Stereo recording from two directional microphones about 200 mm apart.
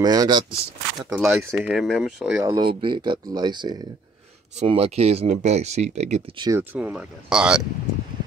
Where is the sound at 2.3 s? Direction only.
15° right (ahead or behind).